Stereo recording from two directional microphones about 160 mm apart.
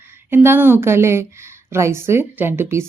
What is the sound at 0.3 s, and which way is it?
Speech, 15° right (ahead or behind).